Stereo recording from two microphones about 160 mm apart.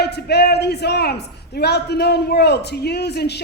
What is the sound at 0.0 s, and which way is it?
A man's voice, 90° left.